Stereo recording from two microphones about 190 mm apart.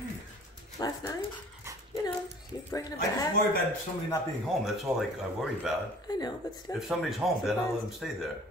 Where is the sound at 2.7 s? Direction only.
20° left (ahead or behind).